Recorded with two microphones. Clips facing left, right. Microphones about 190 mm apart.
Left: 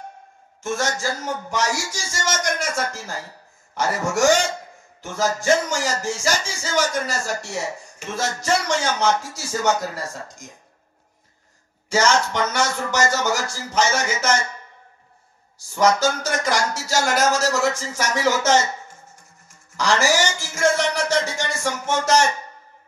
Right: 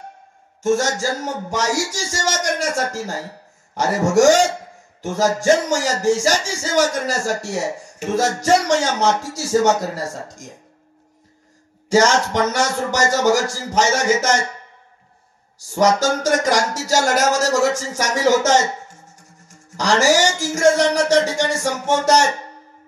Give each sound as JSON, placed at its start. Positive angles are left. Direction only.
{"t": 0.6, "sound": "a man's voice", "side_deg": -40}
{"t": 11.9, "sound": "a man's voice", "side_deg": -40}
{"t": 16.0, "sound": "a sound", "side_deg": -40}
{"t": 19.8, "sound": "a man's voice", "side_deg": -40}